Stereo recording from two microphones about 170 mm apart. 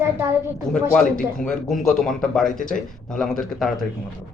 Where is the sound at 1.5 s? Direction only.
Centre (ahead or behind).